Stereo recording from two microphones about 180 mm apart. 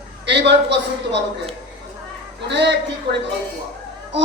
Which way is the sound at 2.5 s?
70° right (ahead or behind).